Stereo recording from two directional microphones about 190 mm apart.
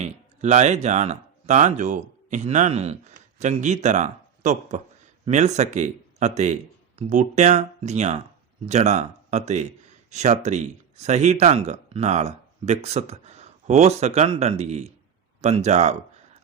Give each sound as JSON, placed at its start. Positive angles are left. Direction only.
{"t": 0.0, "sound": "speech", "side_deg": -35}